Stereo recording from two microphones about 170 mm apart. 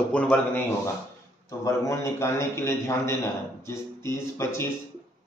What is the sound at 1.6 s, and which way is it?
A man's voice, 20° left (ahead or behind).